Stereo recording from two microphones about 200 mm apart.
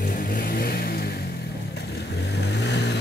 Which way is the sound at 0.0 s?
45° left (ahead or behind).